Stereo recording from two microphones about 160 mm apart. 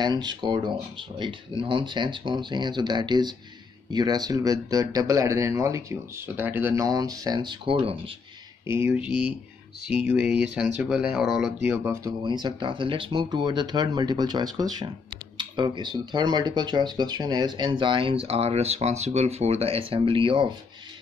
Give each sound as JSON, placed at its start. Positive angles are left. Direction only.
{"t": 0.0, "sound": "speech", "side_deg": -25}
{"t": 8.6, "sound": "speech", "side_deg": -15}
{"t": 11.7, "sound": "speech", "side_deg": -15}